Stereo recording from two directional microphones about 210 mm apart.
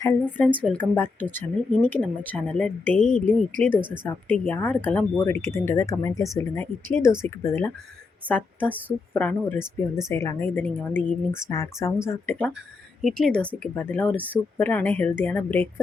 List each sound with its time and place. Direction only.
0.6 s speech: 5° left (ahead or behind)
3.0 s speech: 35° left (ahead or behind)
4.0 s speech: 10° left (ahead or behind)